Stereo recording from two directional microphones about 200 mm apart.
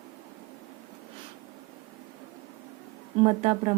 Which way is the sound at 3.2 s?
30° right (ahead or behind).